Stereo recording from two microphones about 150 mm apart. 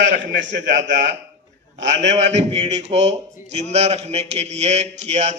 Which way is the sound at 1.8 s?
50° right (ahead or behind).